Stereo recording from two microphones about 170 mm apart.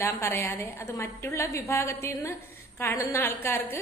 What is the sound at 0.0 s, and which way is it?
A woman's voice, 15° left (ahead or behind).